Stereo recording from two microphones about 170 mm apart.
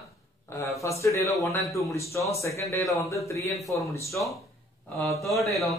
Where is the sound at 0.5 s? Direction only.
15° left (ahead or behind).